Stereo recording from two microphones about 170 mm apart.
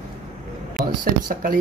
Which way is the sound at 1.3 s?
55° right (ahead or behind).